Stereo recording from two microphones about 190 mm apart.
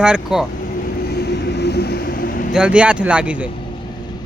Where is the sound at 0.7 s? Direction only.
50° left (ahead or behind).